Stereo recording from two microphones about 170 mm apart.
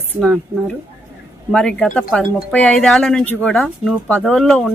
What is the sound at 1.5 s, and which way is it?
Speech, 5° left (ahead or behind).